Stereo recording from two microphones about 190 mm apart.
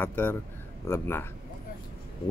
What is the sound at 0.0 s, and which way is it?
Speech, 10° left (ahead or behind).